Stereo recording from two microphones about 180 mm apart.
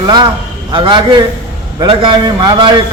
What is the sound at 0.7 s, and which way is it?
A man's voice, 30° right (ahead or behind).